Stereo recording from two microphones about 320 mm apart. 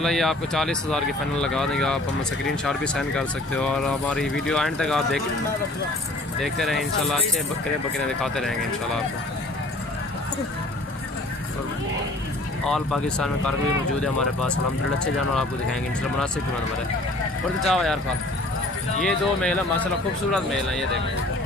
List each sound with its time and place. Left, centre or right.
0.0 s speech: centre
6.4 s speech: centre
8.2 s speech: centre
12.6 s speech: centre
17.6 s speech: centre
19.0 s speech: centre